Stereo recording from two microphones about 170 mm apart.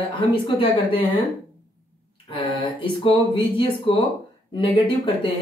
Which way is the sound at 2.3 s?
30° left (ahead or behind).